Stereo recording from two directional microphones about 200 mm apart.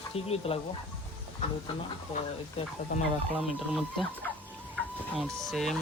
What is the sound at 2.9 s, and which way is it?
Speech, 40° left (ahead or behind).